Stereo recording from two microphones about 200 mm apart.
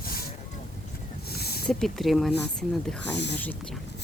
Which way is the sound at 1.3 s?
50° left (ahead or behind).